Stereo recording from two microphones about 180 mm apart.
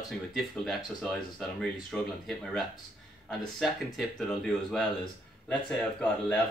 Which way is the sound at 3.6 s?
Centre (ahead or behind).